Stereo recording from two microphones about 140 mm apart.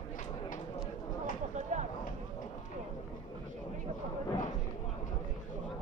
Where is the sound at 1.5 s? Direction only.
60° right (ahead or behind).